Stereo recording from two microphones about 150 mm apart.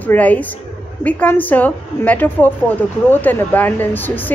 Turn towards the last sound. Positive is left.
turn(degrees=10)  # may be behind; listen again after turning